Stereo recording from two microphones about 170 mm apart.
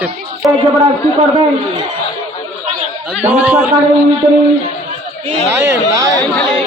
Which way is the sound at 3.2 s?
10° right (ahead or behind).